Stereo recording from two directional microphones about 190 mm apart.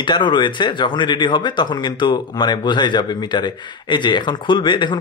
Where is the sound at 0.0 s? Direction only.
25° left (ahead or behind).